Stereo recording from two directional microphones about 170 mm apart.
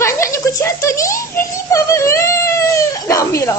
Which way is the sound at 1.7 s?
15° left (ahead or behind).